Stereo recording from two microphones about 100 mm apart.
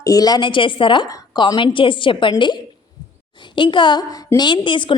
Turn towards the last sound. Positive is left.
turn(degrees=55)  # may be behind; listen again after turning